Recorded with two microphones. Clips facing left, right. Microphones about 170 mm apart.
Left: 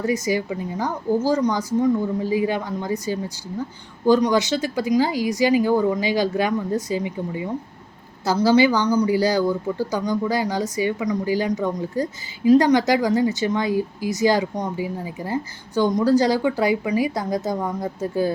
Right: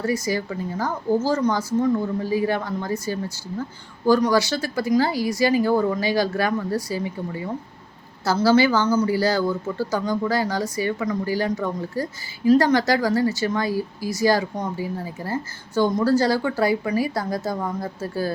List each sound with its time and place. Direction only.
0.0 s speech: 15° left (ahead or behind)